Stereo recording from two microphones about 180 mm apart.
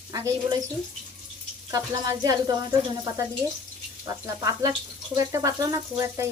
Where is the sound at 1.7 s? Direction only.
20° right (ahead or behind).